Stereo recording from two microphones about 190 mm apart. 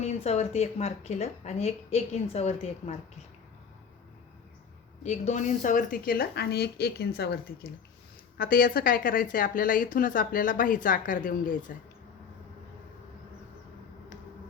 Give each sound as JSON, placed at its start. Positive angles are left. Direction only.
{"t": 0.0, "sound": "speech", "side_deg": 35}
{"t": 5.0, "sound": "a woman's voice", "side_deg": 35}